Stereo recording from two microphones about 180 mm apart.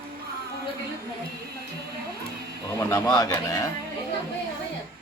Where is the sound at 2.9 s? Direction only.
20° left (ahead or behind).